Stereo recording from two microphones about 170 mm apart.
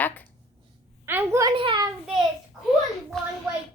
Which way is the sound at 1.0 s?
15° right (ahead or behind).